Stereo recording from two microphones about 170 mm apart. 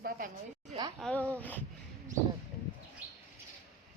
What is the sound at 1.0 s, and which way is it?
Speech, 10° left (ahead or behind).